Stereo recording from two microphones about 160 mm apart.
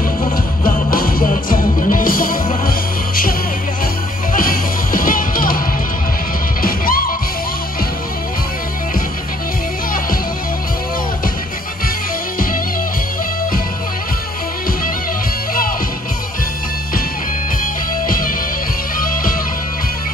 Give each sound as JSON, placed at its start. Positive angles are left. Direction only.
{"t": 0.2, "sound": "music", "side_deg": 60}
{"t": 4.3, "sound": "music", "side_deg": 60}
{"t": 6.6, "sound": "music", "side_deg": 65}
{"t": 18.0, "sound": "music", "side_deg": 60}